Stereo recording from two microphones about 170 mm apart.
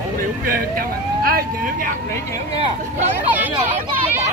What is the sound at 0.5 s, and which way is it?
Speech, 60° right (ahead or behind).